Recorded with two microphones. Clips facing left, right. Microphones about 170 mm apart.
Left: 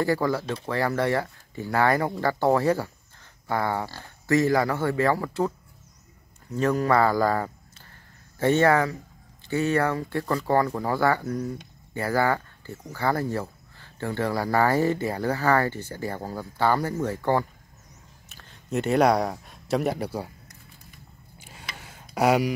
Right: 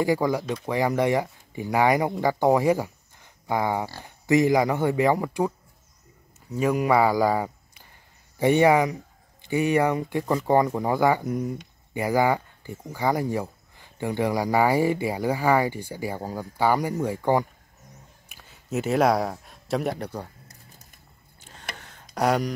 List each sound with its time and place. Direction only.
0.0 s speech: 15° right (ahead or behind)
6.5 s speech: 10° right (ahead or behind)
18.3 s a sound: 5° right (ahead or behind)
19.3 s speech: centre (ahead or behind)
21.4 s a sound: 10° left (ahead or behind)
21.7 s tick-tock: 10° left (ahead or behind)